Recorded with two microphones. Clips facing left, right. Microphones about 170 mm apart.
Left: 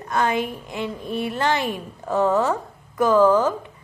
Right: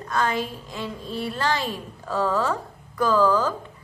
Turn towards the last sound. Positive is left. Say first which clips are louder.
# left 4 dB
turn(degrees=20)  # may be behind; listen again after turning